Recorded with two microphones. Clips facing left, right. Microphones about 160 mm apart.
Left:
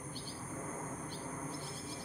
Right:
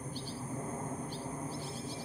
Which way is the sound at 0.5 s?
30° right (ahead or behind).